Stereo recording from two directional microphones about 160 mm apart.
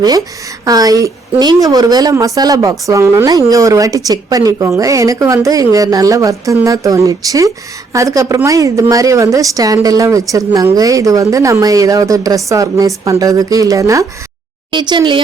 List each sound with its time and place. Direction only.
0.6 s a woman's voice: 25° right (ahead or behind)